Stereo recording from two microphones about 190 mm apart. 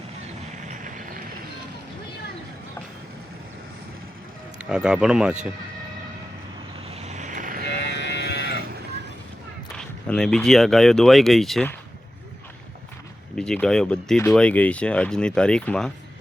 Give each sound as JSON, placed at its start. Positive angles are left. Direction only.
{"t": 0.5, "sound": "vehicle", "side_deg": -40}
{"t": 4.5, "sound": "speech", "side_deg": -5}
{"t": 6.9, "sound": "vehicle", "side_deg": -35}
{"t": 7.7, "sound": "livestock", "side_deg": 65}
{"t": 9.7, "sound": "speech", "side_deg": 5}
{"t": 13.3, "sound": "speech", "side_deg": 5}